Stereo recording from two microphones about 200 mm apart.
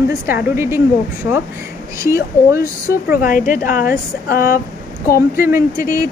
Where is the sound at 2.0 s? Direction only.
15° right (ahead or behind).